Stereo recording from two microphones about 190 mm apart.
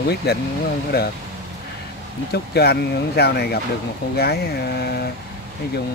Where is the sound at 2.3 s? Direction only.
60° left (ahead or behind).